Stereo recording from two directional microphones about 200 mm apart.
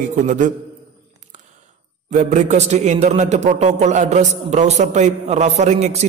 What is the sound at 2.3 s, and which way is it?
A man's voice, 35° right (ahead or behind).